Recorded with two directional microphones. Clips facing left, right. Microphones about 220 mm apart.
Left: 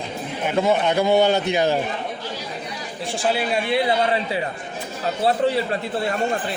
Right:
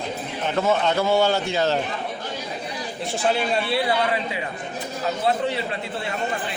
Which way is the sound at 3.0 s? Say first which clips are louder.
Even; centre (ahead or behind).